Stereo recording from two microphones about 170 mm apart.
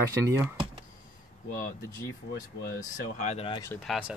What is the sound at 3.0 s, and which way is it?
Speech, 45° left (ahead or behind).